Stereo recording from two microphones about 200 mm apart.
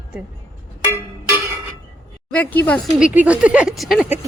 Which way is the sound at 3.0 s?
5° right (ahead or behind).